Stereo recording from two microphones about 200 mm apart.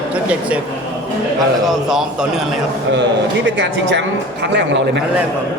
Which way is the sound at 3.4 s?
65° right (ahead or behind).